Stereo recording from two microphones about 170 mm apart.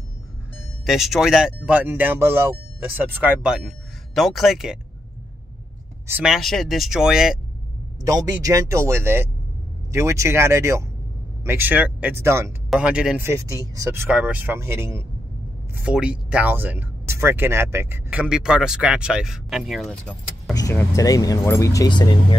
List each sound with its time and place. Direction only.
0.8 s speech: centre (ahead or behind)
6.0 s speech: 5° right (ahead or behind)
8.0 s speech: 20° right (ahead or behind)
12.6 s speech: 5° right (ahead or behind)
20.5 s speech: 20° left (ahead or behind)